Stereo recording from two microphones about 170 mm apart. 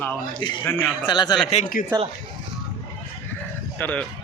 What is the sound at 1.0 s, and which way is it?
Speech, 25° left (ahead or behind).